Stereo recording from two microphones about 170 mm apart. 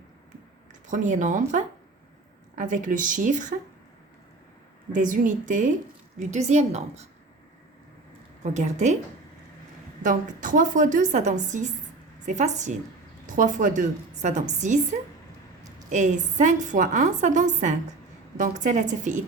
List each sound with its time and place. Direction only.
0.9 s a woman's voice: 45° right (ahead or behind)
4.9 s a woman's voice: 50° right (ahead or behind)
8.5 s a woman's voice: 45° right (ahead or behind)
10.0 s a woman's voice: 50° right (ahead or behind)